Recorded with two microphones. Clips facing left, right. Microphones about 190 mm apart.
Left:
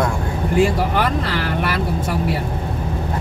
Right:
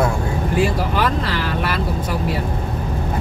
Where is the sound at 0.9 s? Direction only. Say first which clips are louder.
Even; 55° left (ahead or behind).